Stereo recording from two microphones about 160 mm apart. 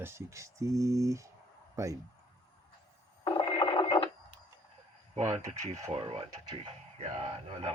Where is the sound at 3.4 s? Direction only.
30° left (ahead or behind).